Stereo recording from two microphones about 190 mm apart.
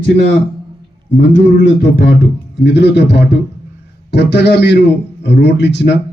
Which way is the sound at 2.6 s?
65° left (ahead or behind).